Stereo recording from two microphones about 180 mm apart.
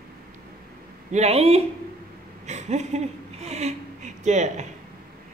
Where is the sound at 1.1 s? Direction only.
35° right (ahead or behind).